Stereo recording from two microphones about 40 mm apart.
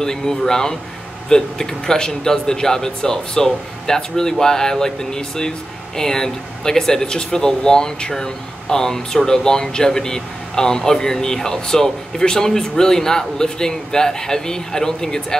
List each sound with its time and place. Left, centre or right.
0.0 s speech: centre